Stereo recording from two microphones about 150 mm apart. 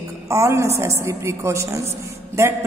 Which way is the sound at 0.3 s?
20° right (ahead or behind).